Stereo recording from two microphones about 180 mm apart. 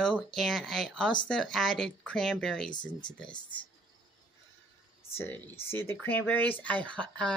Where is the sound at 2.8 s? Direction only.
25° left (ahead or behind).